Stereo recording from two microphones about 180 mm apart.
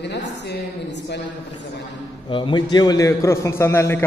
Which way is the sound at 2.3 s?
25° left (ahead or behind).